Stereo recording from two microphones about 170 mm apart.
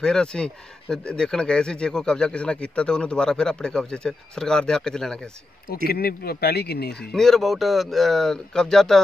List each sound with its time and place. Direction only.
0.0 s speech: 5° left (ahead or behind)
5.9 s speech: 65° left (ahead or behind)
7.0 s speech: 5° left (ahead or behind)